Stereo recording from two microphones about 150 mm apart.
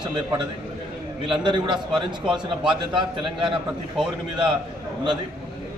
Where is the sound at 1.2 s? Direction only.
35° right (ahead or behind).